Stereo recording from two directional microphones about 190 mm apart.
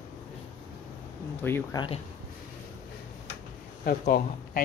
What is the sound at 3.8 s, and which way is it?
Speech, 50° left (ahead or behind).